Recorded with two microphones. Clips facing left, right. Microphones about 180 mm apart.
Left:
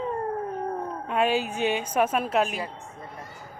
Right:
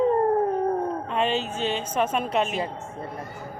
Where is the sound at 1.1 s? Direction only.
10° left (ahead or behind).